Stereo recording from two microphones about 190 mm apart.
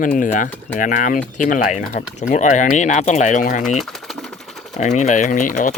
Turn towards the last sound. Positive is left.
turn(degrees=40)  # may be behind; listen again after turning